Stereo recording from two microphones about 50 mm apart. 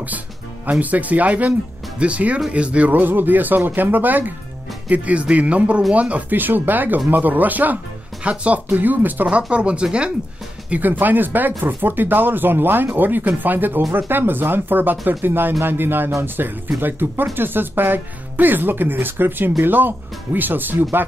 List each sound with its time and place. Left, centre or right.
0.7 s speech: right
2.9 s speech: right
8.2 s speech: right
8.7 s speech: right
9.5 s speech: right
10.7 s speech: right